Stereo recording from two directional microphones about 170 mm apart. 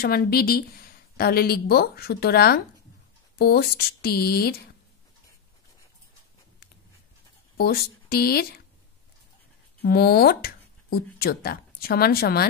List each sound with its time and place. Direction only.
0.0 s speech: 60° left (ahead or behind)
7.5 s speech: 65° left (ahead or behind)
9.8 s speech: 65° left (ahead or behind)